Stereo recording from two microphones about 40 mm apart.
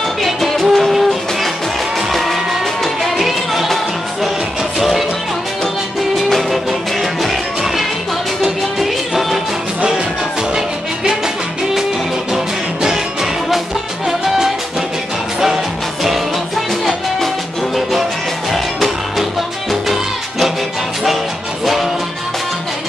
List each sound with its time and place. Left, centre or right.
0.2 s music: centre
2.8 s music: centre
6.1 s music: centre
12.8 s music: centre
18.5 s music: centre